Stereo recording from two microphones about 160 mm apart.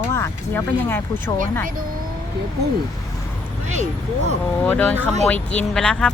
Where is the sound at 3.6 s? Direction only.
50° right (ahead or behind).